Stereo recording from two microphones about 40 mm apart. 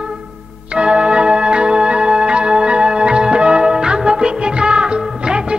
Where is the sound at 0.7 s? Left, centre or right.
Right.